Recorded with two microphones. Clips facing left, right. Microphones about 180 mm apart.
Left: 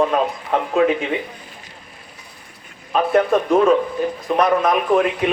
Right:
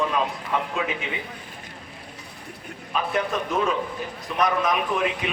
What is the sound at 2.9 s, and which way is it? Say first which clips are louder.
Speech: left 9 dB; 50° left (ahead or behind).